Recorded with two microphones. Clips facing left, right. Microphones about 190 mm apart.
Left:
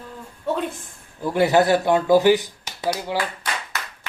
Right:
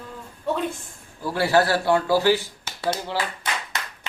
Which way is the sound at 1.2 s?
20° left (ahead or behind).